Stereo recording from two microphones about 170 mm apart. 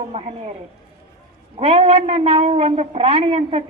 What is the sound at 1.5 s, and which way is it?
A man's voice, 35° right (ahead or behind).